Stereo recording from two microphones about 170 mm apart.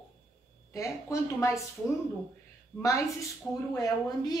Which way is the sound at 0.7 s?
20° left (ahead or behind).